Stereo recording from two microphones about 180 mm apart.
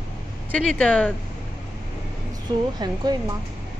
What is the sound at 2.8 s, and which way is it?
Speech, 25° right (ahead or behind).